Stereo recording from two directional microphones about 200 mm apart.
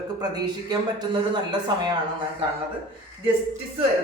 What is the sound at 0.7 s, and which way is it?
Speech, 20° right (ahead or behind).